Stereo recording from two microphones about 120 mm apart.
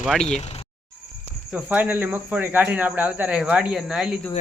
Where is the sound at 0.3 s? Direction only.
65° left (ahead or behind).